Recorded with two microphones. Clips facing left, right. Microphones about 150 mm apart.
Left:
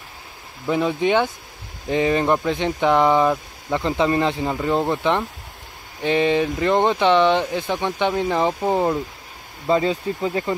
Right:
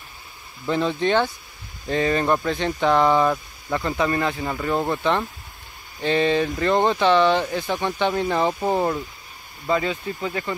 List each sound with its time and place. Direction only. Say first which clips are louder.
0.7 s speech: left 2 dB; 10° left (ahead or behind); by 10.5 s 30° left (ahead or behind)